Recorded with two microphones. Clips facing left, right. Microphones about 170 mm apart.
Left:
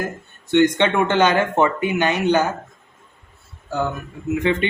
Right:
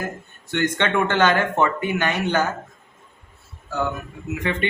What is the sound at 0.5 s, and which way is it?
Speech, 20° left (ahead or behind).